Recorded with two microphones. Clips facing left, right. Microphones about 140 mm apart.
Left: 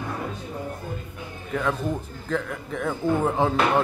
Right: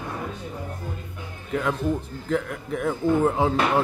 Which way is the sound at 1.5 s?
5° right (ahead or behind).